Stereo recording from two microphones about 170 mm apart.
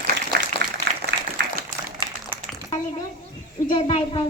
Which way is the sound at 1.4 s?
80° right.